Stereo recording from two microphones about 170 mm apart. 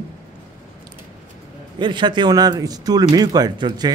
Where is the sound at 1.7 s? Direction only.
25° right (ahead or behind).